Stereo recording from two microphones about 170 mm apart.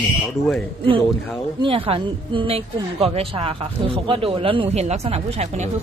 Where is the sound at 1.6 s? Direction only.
30° right (ahead or behind).